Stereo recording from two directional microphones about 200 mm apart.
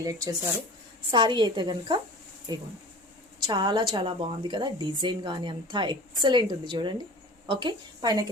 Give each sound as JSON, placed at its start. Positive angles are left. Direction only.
{"t": 0.0, "sound": "a woman's voice", "side_deg": -15}